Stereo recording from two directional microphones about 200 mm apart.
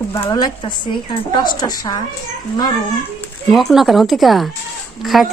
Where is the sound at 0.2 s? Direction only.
20° left (ahead or behind).